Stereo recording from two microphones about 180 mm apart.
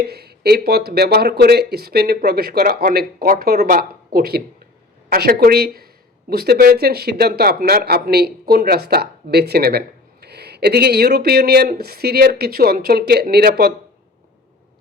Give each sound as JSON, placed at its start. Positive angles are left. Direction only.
{"t": 0.0, "sound": "speech", "side_deg": -60}